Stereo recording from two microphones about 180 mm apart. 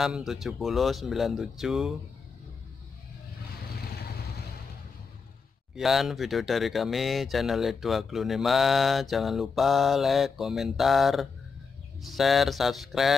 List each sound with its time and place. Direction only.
0.0 s speech: centre (ahead or behind)
5.8 s speech: centre (ahead or behind)